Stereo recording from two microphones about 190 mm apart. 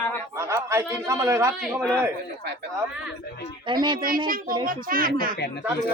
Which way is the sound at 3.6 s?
25° right (ahead or behind).